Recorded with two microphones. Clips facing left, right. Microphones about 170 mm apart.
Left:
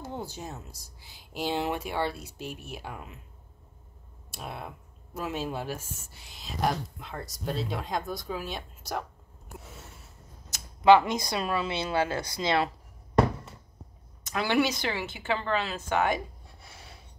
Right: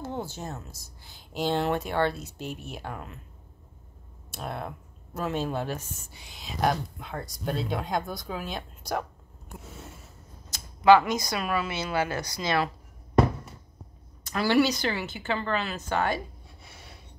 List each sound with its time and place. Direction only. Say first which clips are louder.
0.0 s speech: right 3 dB; 10° left (ahead or behind)
4.3 s speech: right 4 dB; 5° left (ahead or behind)
10.8 s speech: right 1 dB; 25° left (ahead or behind)
14.3 s speech: right 3 dB; 20° left (ahead or behind)